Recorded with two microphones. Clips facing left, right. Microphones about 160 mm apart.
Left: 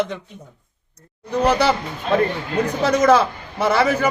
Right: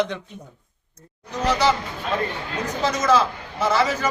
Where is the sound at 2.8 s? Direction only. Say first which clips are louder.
Left 4 dB; 60° left (ahead or behind).